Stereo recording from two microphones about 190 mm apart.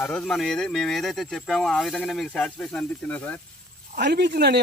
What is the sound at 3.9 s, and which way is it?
Speech, 60° right (ahead or behind).